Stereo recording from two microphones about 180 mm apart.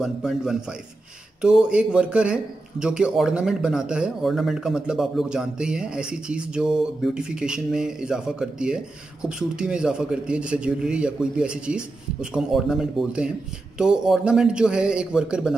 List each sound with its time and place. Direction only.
0.0 s a man's voice: 5° right (ahead or behind)